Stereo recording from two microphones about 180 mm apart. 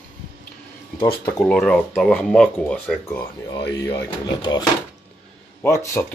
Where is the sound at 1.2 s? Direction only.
5° left (ahead or behind).